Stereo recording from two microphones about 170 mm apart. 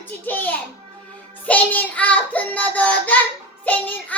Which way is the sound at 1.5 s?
10° left (ahead or behind).